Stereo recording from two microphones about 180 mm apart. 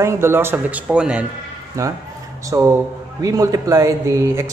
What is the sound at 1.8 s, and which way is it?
Speech, 15° right (ahead or behind).